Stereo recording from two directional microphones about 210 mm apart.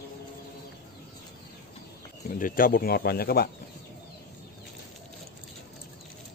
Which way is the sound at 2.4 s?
40° left (ahead or behind).